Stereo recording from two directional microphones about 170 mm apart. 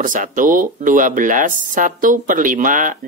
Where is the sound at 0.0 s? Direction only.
50° right (ahead or behind).